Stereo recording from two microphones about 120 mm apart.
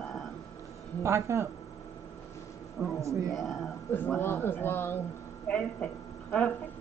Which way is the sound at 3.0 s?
25° right (ahead or behind).